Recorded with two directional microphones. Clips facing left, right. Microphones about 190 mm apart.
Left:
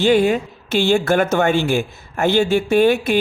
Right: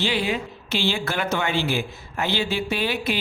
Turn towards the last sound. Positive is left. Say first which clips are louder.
# left 10 dB
turn(degrees=50)  # may be behind; listen again after turning